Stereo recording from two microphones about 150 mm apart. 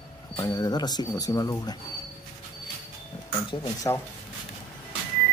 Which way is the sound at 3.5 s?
30° left (ahead or behind).